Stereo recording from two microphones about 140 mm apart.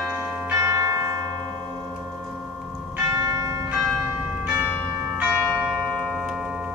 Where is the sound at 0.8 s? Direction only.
20° right (ahead or behind).